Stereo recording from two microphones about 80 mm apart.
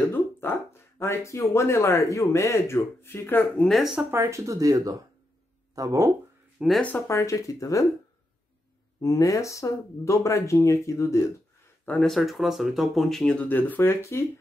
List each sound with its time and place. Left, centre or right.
0.1 s speech: left
3.5 s speech: centre
3.8 s speech: centre
4.1 s speech: right
6.6 s speech: centre
7.1 s speech: left
9.0 s speech: left
12.0 s speech: centre
13.5 s speech: left